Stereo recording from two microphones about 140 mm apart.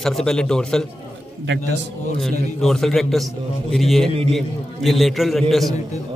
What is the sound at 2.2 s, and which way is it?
A man's voice, 5° left (ahead or behind).